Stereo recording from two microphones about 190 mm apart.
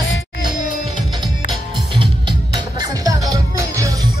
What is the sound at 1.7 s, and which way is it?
Music, 25° right (ahead or behind).